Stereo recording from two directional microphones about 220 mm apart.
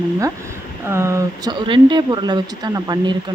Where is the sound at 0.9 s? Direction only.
10° right (ahead or behind).